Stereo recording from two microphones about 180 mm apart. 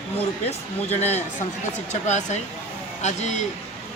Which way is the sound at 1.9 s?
40° left (ahead or behind).